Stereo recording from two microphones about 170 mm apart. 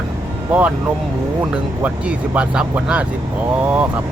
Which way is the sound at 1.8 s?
10° right (ahead or behind).